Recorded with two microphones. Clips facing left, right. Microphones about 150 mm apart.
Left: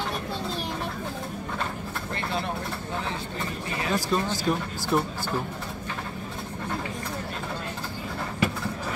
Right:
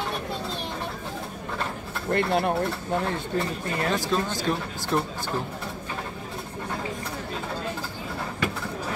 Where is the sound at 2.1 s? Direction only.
55° right (ahead or behind).